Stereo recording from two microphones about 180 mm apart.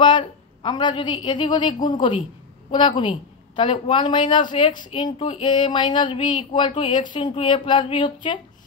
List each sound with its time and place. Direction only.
0.0 s speech: 25° left (ahead or behind)